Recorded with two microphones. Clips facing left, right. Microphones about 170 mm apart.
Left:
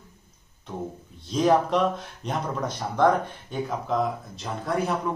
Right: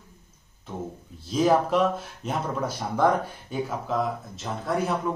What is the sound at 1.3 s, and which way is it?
Speech, 5° right (ahead or behind).